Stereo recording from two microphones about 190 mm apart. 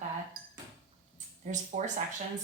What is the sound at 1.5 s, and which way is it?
Speech, 40° right (ahead or behind).